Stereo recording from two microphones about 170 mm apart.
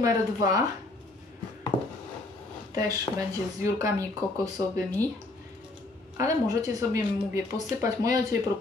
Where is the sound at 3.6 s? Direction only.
20° right (ahead or behind).